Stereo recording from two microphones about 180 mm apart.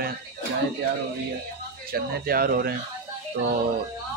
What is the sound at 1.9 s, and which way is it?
Speech, 55° right (ahead or behind).